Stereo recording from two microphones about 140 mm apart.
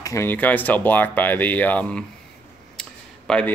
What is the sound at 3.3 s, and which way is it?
Speech, 10° left (ahead or behind).